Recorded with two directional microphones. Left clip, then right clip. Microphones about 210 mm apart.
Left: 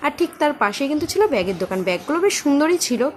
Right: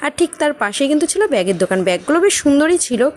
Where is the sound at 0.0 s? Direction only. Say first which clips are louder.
Right 3 dB; 30° right (ahead or behind).